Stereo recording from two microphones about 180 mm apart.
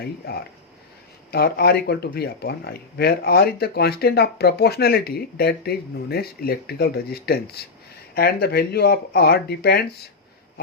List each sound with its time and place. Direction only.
0.0 s speech: 60° left (ahead or behind)